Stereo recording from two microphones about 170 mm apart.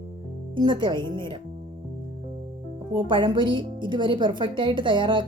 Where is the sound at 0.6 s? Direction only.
30° right (ahead or behind).